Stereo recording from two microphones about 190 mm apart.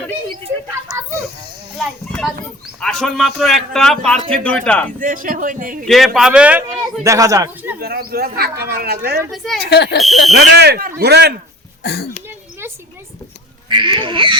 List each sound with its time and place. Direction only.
0.7 s a sound: 15° right (ahead or behind)
1.8 s a man's voice: centre (ahead or behind)
4.9 s speech: 45° right (ahead or behind)
5.8 s a man's voice: centre (ahead or behind)
7.8 s speech: 55° right (ahead or behind)
9.3 s a man's voice: centre (ahead or behind)
9.6 s speech: 60° left (ahead or behind)
10.0 s a man's voice: centre (ahead or behind)
10.6 s speech: 55° right (ahead or behind)
11.8 s speech: 60° left (ahead or behind)
13.7 s speech: 25° right (ahead or behind)